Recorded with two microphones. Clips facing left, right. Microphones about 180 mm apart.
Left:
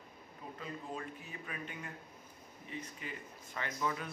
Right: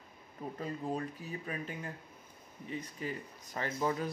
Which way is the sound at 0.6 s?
35° right (ahead or behind).